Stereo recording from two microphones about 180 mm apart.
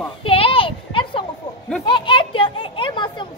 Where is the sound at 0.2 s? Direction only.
30° left (ahead or behind).